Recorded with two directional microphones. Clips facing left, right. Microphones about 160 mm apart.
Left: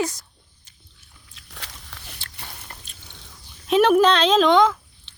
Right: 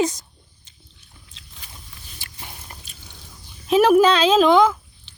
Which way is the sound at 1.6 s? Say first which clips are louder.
Left 4 dB; 80° left.